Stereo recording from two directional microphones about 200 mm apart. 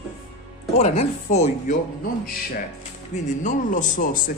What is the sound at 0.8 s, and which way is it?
Speech, 35° left (ahead or behind).